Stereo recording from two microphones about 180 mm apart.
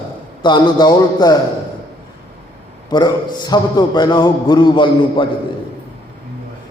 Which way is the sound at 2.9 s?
25° left (ahead or behind).